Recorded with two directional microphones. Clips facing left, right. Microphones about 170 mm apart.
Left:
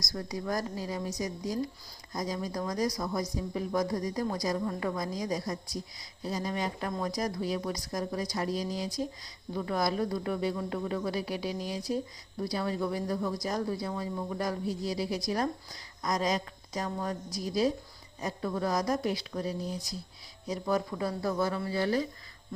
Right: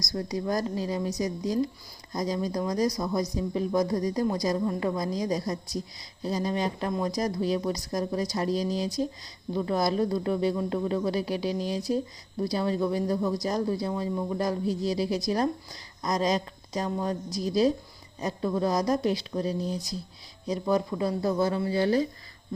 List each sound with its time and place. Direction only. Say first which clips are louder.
0.1 s speech: right 5 dB; 25° right (ahead or behind)